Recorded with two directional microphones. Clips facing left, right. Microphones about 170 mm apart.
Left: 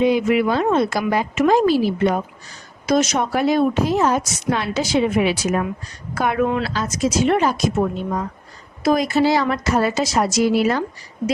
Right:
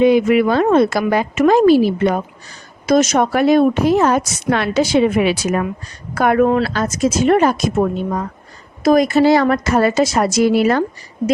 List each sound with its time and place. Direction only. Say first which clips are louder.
0.0 s a woman's voice: right 5 dB; 60° right (ahead or behind)
2.8 s speech: right 5 dB; 50° right (ahead or behind)
3.3 s a woman's voice: right 4 dB; 60° right (ahead or behind)
6.1 s speech: right 6 dB; 50° right (ahead or behind)